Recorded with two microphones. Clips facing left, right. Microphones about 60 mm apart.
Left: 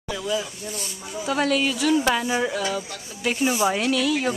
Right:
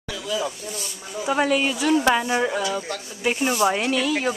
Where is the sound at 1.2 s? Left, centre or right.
Centre.